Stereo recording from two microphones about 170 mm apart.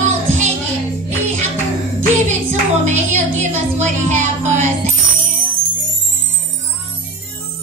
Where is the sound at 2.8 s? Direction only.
40° right (ahead or behind).